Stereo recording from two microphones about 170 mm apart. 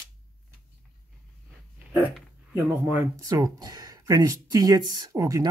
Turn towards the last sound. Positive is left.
turn(degrees=-20)  # may be behind; listen again after turning